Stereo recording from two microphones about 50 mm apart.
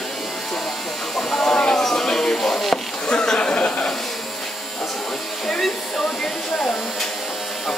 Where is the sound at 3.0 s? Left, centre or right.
Centre.